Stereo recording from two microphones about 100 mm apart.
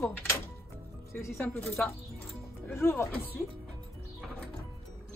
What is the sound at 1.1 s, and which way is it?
Speech, 20° left (ahead or behind).